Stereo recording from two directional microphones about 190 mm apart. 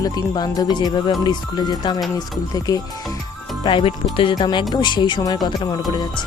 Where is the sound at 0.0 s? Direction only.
20° left (ahead or behind).